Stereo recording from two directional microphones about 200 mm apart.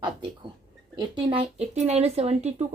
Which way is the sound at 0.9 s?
25° right (ahead or behind).